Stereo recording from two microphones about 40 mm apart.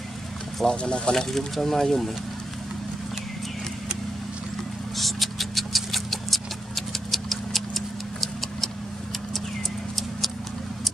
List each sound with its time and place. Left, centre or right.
0.7 s speech: left
1.1 s speech: centre
4.9 s a sound: centre